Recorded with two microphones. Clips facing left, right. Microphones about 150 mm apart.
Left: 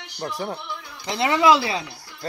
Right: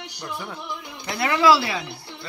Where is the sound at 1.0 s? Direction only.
20° left (ahead or behind).